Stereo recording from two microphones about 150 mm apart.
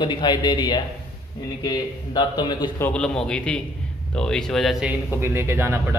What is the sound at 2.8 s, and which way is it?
A man's voice, 5° left (ahead or behind).